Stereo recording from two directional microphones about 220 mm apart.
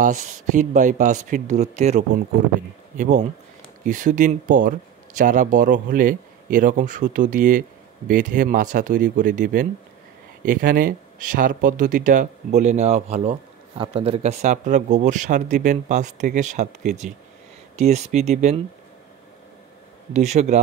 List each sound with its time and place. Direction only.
0.0 s speech: 35° right (ahead or behind)
20.1 s speech: 30° right (ahead or behind)